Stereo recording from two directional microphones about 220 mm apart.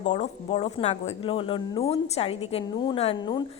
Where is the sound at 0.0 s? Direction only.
30° left (ahead or behind).